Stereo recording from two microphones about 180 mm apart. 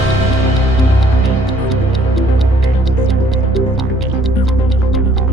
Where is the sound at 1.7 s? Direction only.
Centre (ahead or behind).